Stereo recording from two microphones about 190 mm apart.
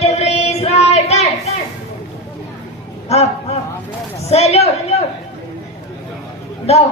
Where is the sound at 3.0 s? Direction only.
35° left (ahead or behind).